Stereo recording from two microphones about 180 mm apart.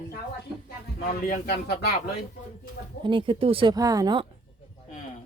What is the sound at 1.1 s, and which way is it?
Speech, 55° left (ahead or behind).